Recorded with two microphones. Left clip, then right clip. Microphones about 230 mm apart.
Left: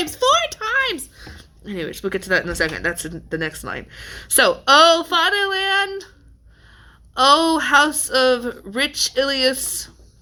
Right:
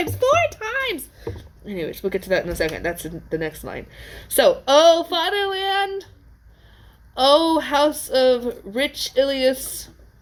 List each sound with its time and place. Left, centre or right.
0.0 s speech: left
0.3 s speech: left
7.1 s speech: left